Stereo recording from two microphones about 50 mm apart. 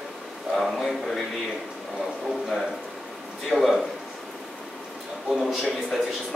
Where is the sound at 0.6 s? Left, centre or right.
Centre.